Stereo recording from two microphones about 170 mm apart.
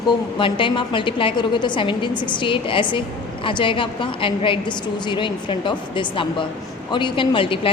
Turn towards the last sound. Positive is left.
turn(degrees=30)  # may be behind; listen again after turning